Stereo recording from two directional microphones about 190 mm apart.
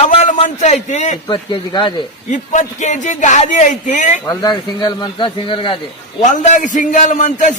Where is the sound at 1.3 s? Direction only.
25° left (ahead or behind).